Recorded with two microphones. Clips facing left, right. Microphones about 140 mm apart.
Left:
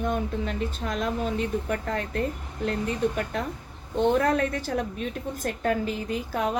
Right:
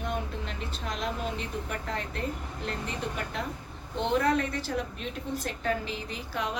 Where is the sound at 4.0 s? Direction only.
45° left (ahead or behind).